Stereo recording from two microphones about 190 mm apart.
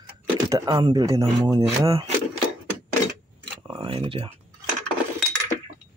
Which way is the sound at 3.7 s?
25° right (ahead or behind).